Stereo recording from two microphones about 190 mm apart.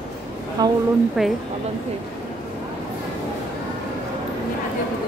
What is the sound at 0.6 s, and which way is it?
Speech, 20° right (ahead or behind).